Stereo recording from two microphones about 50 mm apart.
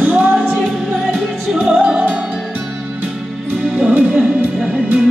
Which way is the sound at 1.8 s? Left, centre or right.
Right.